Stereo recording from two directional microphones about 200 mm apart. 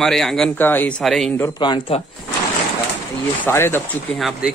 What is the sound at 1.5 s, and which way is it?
Speech, 20° left (ahead or behind).